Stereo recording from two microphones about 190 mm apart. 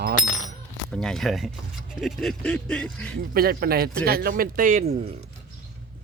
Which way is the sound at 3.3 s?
55° right (ahead or behind).